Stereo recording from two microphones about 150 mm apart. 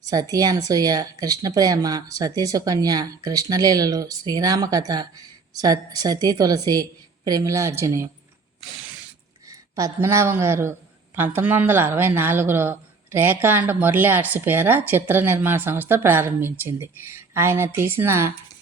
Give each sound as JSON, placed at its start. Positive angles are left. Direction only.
{"t": 0.0, "sound": "speech", "side_deg": -25}
{"t": 9.5, "sound": "speech", "side_deg": -20}